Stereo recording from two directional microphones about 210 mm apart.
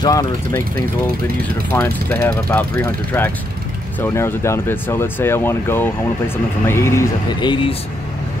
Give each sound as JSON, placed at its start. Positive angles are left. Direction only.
{"t": 0.0, "sound": "speech", "side_deg": 15}
{"t": 1.7, "sound": "speech", "side_deg": 10}